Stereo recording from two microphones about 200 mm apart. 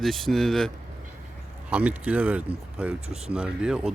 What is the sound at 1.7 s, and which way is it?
Speech, 5° right (ahead or behind).